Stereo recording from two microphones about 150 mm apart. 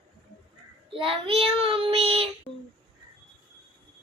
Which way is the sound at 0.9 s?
35° right (ahead or behind).